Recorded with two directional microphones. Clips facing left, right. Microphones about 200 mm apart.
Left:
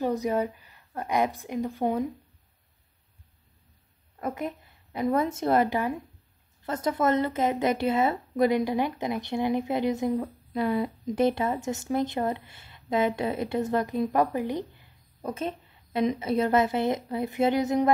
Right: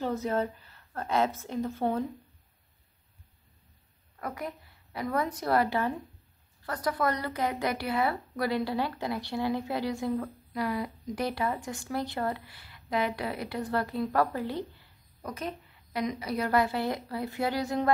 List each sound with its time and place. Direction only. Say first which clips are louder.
0.0 s a woman's voice: left 3 dB; 15° left (ahead or behind)
4.2 s a woman's voice: left 5 dB; 25° left (ahead or behind)